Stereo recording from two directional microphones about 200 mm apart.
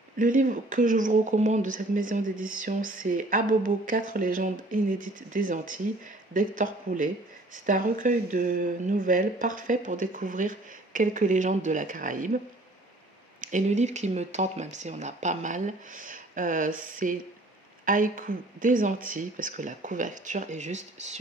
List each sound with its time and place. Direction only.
0.2 s speech: 40° right (ahead or behind)
13.4 s speech: 40° right (ahead or behind)